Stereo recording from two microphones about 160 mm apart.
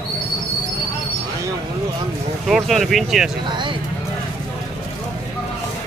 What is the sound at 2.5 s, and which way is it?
Speech, centre (ahead or behind).